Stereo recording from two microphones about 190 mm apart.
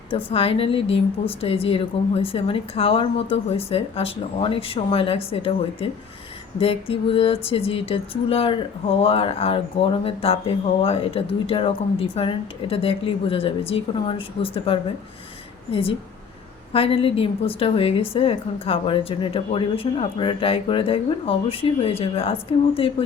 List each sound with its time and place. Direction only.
0.3 s speech: 30° left (ahead or behind)